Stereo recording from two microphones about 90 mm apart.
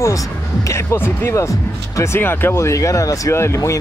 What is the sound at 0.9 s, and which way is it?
Speech, 25° left (ahead or behind).